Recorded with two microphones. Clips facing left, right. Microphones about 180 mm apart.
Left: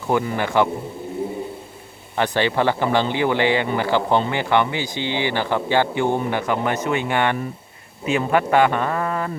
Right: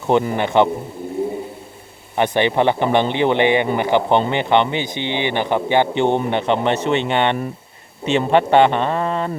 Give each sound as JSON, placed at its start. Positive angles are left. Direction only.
{"t": 0.1, "sound": "speech", "side_deg": -25}
{"t": 2.1, "sound": "speech", "side_deg": -20}